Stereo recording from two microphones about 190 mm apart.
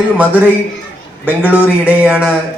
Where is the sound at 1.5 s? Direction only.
5° right (ahead or behind).